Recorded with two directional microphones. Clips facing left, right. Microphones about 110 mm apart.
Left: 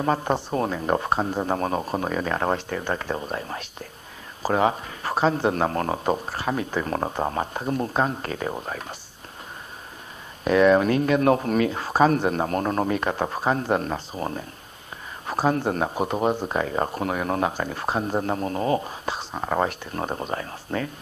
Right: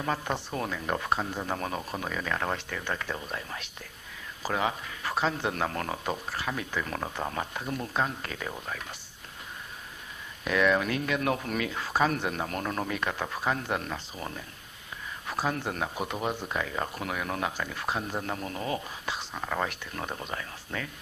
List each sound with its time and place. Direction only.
0.0 s speech: 35° left (ahead or behind)
10.4 s speech: 35° left (ahead or behind)